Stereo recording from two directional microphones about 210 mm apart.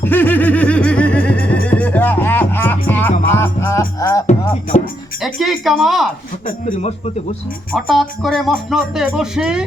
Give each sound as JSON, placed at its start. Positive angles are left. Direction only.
{"t": 0.0, "sound": "music", "side_deg": 10}
{"t": 5.2, "sound": "speech", "side_deg": 0}
{"t": 6.7, "sound": "speech", "side_deg": 30}
{"t": 7.7, "sound": "speech", "side_deg": 0}